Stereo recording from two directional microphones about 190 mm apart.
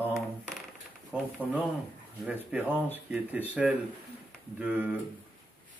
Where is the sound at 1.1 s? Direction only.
10° right (ahead or behind).